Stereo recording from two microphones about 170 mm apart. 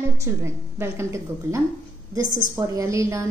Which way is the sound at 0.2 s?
15° right (ahead or behind).